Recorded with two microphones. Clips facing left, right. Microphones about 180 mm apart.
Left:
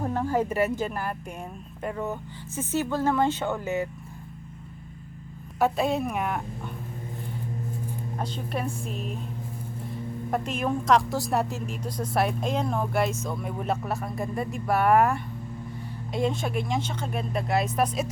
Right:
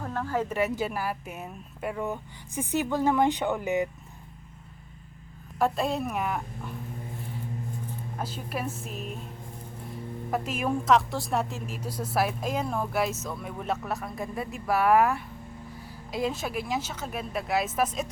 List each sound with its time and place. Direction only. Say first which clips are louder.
0.0 s speech: left 4 dB; 20° left (ahead or behind)
0.8 s speech: even; 5° right (ahead or behind)
5.5 s speech: left 2 dB; centre (ahead or behind)
8.2 s speech: left 2 dB; 5° right (ahead or behind)
10.3 s speech: left 1 dB; 5° right (ahead or behind)